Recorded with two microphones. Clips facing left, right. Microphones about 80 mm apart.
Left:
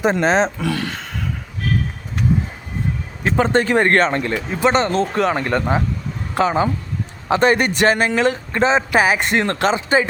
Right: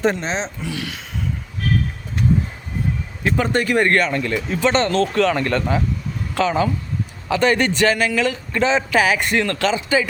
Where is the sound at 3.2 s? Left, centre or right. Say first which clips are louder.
Left 3 dB; left.